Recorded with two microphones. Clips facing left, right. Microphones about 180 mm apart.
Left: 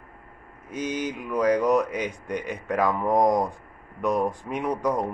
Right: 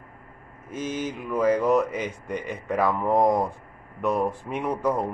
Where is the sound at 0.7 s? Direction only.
5° right (ahead or behind).